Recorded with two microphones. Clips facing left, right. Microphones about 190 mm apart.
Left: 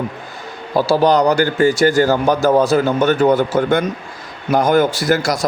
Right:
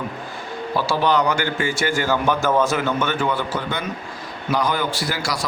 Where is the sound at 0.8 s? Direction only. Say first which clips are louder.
Left 7 dB; 40° left (ahead or behind).